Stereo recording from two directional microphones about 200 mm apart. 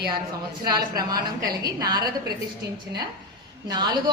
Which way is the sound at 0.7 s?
20° right (ahead or behind).